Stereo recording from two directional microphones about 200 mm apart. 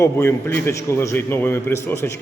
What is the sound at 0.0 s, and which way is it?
A man's voice, 10° left (ahead or behind).